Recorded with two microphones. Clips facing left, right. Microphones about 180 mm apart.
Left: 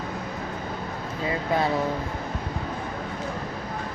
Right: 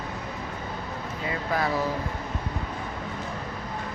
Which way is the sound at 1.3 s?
25° left (ahead or behind).